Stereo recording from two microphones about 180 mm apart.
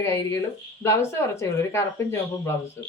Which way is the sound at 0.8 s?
15° left (ahead or behind).